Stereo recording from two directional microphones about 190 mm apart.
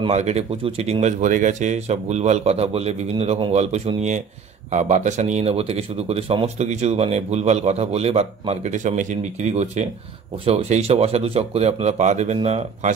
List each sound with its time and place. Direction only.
0.0 s speech: 35° right (ahead or behind)